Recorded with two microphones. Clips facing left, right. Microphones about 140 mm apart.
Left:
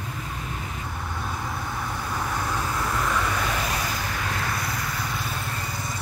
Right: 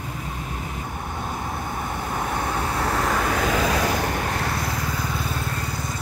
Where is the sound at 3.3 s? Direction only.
90° right.